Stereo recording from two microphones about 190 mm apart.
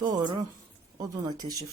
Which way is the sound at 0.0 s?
20° right (ahead or behind).